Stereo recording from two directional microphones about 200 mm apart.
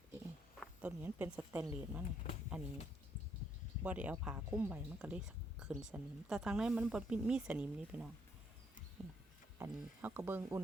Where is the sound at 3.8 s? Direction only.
5° right (ahead or behind).